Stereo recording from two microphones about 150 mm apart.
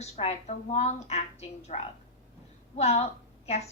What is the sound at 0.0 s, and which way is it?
A woman's voice, 45° left (ahead or behind).